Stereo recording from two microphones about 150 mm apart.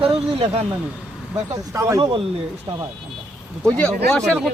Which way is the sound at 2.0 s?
35° right (ahead or behind).